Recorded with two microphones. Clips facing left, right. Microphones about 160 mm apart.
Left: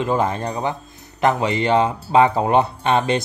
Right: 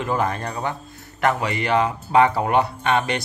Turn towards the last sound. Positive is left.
turn(degrees=25)  # may be behind; listen again after turning